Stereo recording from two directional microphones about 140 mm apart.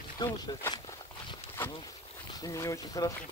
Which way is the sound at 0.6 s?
25° left (ahead or behind).